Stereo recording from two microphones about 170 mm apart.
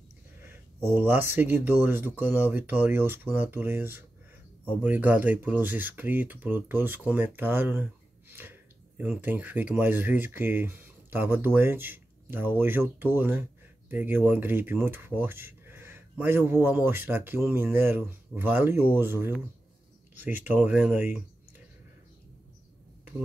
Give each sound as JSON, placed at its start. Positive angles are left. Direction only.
{"t": 0.8, "sound": "speech", "side_deg": -10}